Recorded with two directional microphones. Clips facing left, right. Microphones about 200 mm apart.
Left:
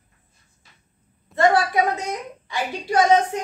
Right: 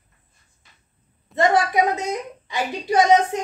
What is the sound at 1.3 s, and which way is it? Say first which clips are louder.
Speech: even; 20° right (ahead or behind).